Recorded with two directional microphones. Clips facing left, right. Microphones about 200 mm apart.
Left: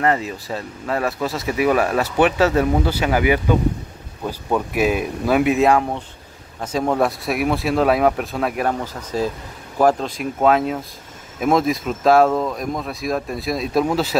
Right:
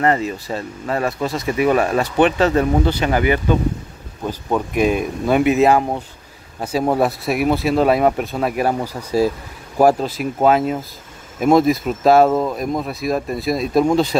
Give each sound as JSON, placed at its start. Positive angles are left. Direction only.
{"t": 0.0, "sound": "speech", "side_deg": 0}
{"t": 4.7, "sound": "speech", "side_deg": 5}